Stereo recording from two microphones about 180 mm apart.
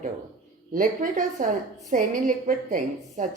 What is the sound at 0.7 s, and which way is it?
A woman's voice, 45° right (ahead or behind).